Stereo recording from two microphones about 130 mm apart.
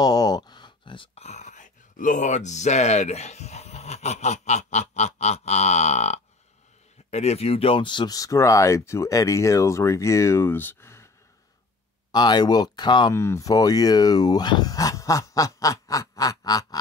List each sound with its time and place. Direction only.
0.0 s a sound: 30° left (ahead or behind)
1.2 s speech: 60° left (ahead or behind); by 11.1 s 20° left (ahead or behind)
12.1 s speech: 35° left (ahead or behind)
13.1 s speech: 20° left (ahead or behind)